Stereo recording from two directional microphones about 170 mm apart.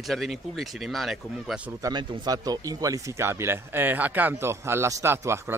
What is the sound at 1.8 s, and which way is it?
Speech, 25° right (ahead or behind).